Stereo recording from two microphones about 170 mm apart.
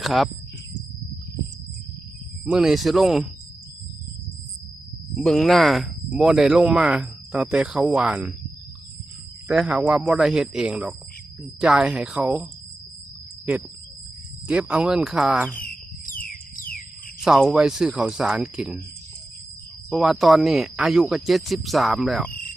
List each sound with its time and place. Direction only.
0.0 s speech: centre (ahead or behind)
2.4 s speech: 5° right (ahead or behind)
5.1 s speech: 5° left (ahead or behind)
9.5 s speech: 5° right (ahead or behind)
14.4 s speech: 10° right (ahead or behind)
16.0 s a sound: 55° left (ahead or behind)
17.2 s speech: 5° right (ahead or behind)
19.9 s speech: centre (ahead or behind)
22.3 s cricket: 55° left (ahead or behind)